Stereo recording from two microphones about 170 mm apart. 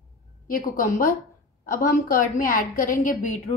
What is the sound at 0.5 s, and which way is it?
A woman's voice, 55° left (ahead or behind).